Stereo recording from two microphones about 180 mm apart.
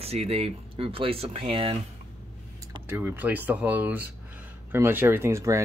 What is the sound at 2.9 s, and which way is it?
Speech, 10° right (ahead or behind).